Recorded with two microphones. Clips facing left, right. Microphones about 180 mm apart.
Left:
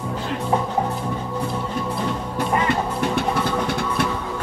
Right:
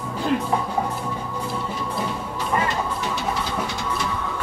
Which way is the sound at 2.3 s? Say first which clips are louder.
Left 3 dB; 55° left (ahead or behind).